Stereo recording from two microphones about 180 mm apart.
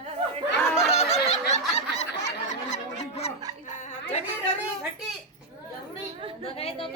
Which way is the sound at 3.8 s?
40° left (ahead or behind).